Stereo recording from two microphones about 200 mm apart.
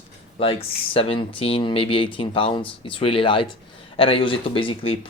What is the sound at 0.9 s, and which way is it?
Speech, 25° left (ahead or behind).